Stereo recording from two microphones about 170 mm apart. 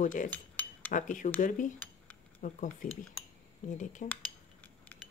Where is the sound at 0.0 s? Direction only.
50° left (ahead or behind).